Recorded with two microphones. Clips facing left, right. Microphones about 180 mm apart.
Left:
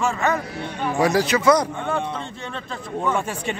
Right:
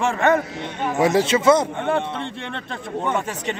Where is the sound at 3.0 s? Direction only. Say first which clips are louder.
Left 1 dB; 20° right (ahead or behind).